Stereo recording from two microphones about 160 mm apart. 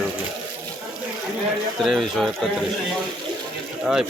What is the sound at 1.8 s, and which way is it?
Speech, centre (ahead or behind).